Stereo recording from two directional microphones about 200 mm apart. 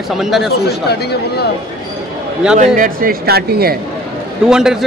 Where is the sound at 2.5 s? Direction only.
40° right (ahead or behind).